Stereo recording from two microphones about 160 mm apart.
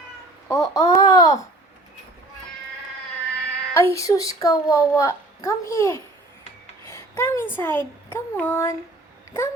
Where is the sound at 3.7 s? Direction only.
20° left (ahead or behind).